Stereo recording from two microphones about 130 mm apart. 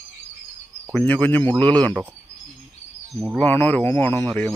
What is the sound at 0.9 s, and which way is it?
Speech, 10° left (ahead or behind).